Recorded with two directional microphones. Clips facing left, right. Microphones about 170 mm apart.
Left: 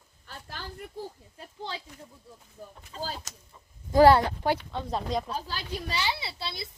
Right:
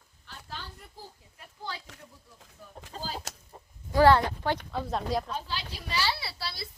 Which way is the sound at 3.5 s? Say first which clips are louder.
Right 5 dB; 50° right (ahead or behind).